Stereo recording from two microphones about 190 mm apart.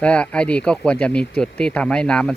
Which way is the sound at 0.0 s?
5° left (ahead or behind).